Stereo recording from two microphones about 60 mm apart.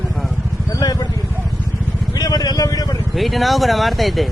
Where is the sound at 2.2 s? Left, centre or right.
Left.